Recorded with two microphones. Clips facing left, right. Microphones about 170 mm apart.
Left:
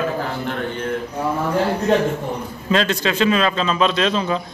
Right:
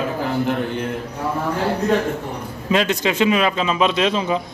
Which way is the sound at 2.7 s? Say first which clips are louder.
Even; 15° right (ahead or behind).